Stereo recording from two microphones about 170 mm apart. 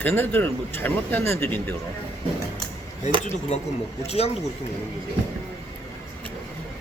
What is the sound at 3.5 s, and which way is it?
Speech, 40° left (ahead or behind).